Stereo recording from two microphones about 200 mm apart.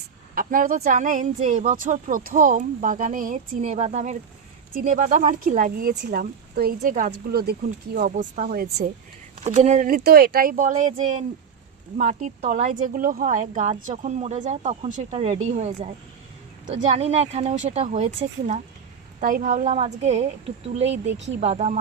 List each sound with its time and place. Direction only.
0.3 s a woman's voice: 45° right (ahead or behind)
7.3 s speech: 50° right (ahead or behind)
9.4 s a woman's voice: 35° right (ahead or behind)